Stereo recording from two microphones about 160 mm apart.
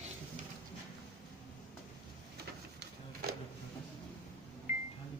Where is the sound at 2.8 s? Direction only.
80° right.